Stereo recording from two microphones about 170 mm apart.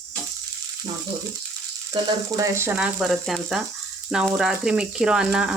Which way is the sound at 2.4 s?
15° right (ahead or behind).